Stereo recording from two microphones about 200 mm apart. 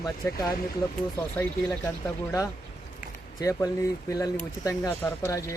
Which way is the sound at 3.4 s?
15° left (ahead or behind).